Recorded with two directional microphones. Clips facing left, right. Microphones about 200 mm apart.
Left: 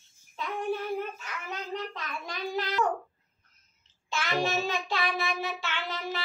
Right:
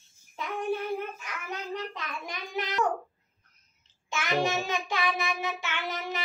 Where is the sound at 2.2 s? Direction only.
20° right (ahead or behind).